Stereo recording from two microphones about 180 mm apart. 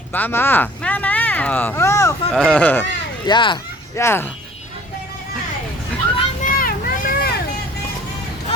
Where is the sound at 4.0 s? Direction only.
15° left (ahead or behind).